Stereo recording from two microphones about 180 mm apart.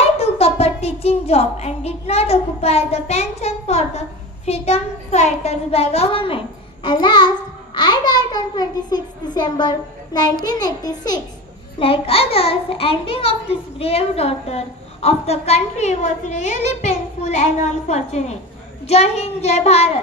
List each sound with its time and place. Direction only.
0.2 s child singing: 35° left (ahead or behind)
4.5 s a child's voice: 35° left (ahead or behind)